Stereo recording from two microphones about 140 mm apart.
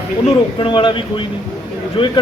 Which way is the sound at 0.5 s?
35° left (ahead or behind).